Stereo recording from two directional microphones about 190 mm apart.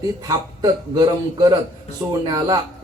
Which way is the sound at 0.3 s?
20° right (ahead or behind).